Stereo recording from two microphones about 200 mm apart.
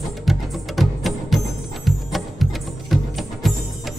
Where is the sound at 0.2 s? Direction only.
Centre (ahead or behind).